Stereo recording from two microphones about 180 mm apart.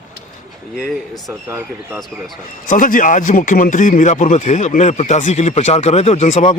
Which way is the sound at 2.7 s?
50° left (ahead or behind).